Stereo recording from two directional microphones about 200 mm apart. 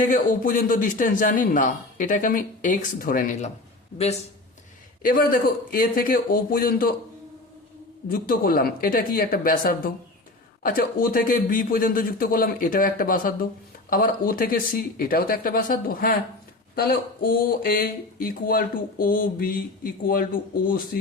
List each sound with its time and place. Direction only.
0.0 s a man's voice: 40° left (ahead or behind)
3.9 s a man's voice: 30° left (ahead or behind)
5.0 s speech: 45° left (ahead or behind)
8.1 s speech: 45° left (ahead or behind)